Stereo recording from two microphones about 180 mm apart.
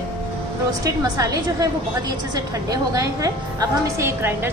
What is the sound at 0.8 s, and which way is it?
Speech, 20° right (ahead or behind).